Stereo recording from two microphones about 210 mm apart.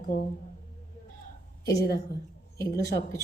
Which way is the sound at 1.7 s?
50° left (ahead or behind).